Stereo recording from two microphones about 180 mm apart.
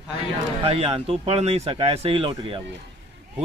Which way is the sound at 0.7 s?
35° right (ahead or behind).